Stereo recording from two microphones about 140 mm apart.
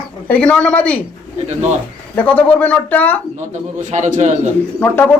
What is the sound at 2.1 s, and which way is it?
Speech, 10° left (ahead or behind).